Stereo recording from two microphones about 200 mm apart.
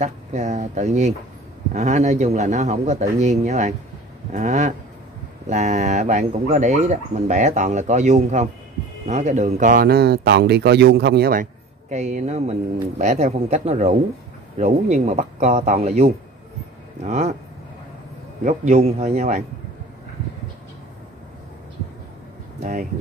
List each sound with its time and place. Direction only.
0.0 s speech: 35° right (ahead or behind); by 11.4 s 50° right (ahead or behind)
11.9 s speech: 35° right (ahead or behind)
18.4 s speech: 35° right (ahead or behind)
22.6 s speech: 40° right (ahead or behind)